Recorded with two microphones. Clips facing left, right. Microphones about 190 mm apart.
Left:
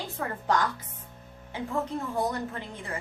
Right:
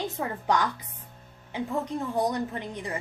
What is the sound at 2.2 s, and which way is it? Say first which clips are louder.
Speech: right 3 dB; 15° right (ahead or behind).